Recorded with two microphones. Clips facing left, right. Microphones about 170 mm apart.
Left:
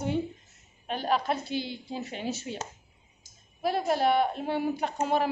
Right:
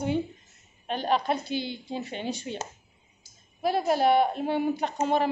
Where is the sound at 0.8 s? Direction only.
5° left (ahead or behind).